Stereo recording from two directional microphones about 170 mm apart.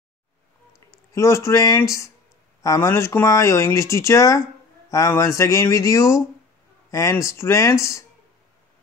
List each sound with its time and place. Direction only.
1.1 s speech: 15° left (ahead or behind)